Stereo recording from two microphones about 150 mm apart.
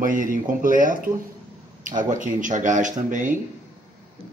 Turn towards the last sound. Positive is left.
turn(degrees=-60)  # may be behind; listen again after turning